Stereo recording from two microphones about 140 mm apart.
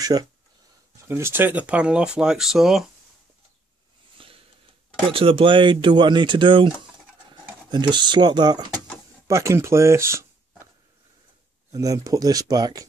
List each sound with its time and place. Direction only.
0.0 s speech: 30° right (ahead or behind)
1.0 s speech: 15° right (ahead or behind); by 2.8 s centre (ahead or behind)
4.2 s a sound: 40° right (ahead or behind)
5.1 s speech: 40° right (ahead or behind)
7.7 s speech: 35° right (ahead or behind)
11.7 s speech: 25° right (ahead or behind)